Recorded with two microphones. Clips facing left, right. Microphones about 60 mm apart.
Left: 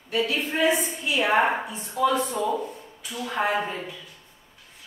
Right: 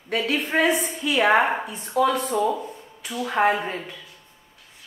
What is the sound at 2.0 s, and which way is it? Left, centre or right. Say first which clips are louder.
Speech: right 2 dB; right.